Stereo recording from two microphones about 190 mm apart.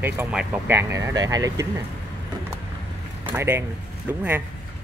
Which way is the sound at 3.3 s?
10° right (ahead or behind).